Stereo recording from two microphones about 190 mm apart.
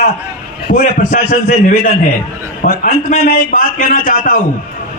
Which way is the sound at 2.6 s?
45° left (ahead or behind).